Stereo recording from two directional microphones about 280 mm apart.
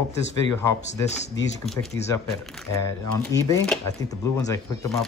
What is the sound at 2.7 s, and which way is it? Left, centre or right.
Speech, centre.